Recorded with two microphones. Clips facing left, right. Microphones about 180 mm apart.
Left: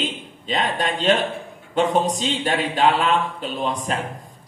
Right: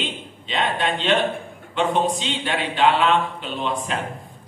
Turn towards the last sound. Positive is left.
turn(degrees=40)  # may be behind; listen again after turning